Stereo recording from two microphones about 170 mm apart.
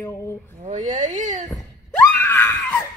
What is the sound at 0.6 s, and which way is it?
Speech, 45° right (ahead or behind).